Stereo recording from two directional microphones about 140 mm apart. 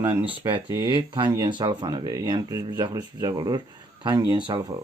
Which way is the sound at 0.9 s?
35° right (ahead or behind).